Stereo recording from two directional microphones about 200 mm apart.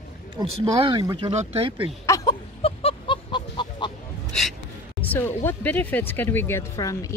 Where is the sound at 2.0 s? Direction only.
15° left (ahead or behind).